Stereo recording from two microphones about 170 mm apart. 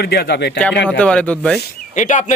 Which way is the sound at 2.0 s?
45° left (ahead or behind).